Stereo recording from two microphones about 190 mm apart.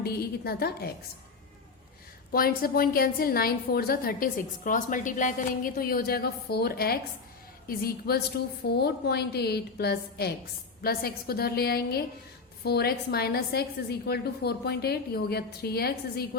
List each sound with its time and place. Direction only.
0.0 s a woman's voice: 55° left (ahead or behind)
2.3 s a woman's voice: 50° left (ahead or behind)